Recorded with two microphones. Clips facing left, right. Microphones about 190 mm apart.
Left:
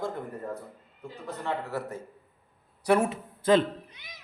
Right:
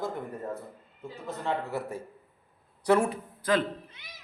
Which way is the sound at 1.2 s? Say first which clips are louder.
Right 1 dB; 10° right (ahead or behind).